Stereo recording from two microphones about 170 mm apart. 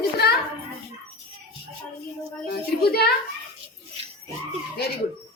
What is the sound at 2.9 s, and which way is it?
Speech, 65° left (ahead or behind).